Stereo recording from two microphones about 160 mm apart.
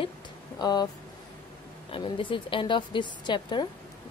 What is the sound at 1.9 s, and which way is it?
A woman's voice, 35° left (ahead or behind).